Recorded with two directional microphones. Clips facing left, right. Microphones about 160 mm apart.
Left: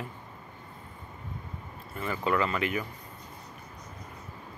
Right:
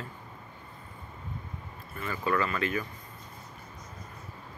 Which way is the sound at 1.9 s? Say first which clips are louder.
Left 1 dB; 20° left (ahead or behind).